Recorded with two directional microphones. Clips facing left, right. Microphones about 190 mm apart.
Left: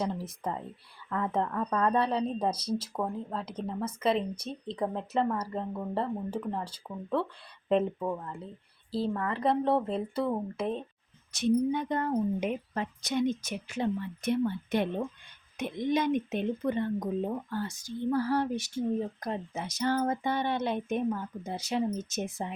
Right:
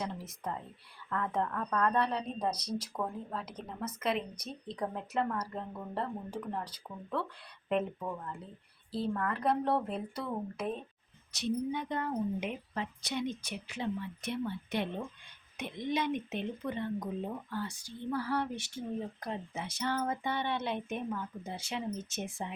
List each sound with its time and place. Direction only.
0.0 s a woman's voice: 30° left (ahead or behind)
11.3 s a woman's voice: 50° left (ahead or behind)